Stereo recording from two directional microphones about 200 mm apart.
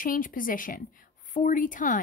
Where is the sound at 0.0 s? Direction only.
45° left (ahead or behind).